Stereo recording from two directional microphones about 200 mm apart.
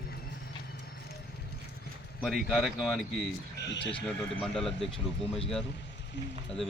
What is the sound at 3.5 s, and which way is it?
Speech, 60° left (ahead or behind).